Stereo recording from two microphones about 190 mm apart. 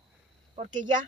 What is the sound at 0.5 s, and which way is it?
Speech, 40° right (ahead or behind).